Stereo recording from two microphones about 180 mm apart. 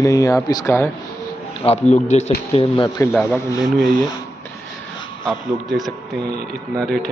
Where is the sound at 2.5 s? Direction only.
30° left (ahead or behind).